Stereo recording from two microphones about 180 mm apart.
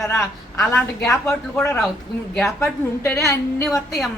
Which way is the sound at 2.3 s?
15° left (ahead or behind).